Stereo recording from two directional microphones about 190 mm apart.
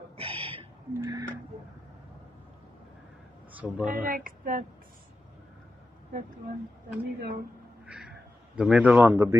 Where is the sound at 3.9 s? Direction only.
45° right (ahead or behind).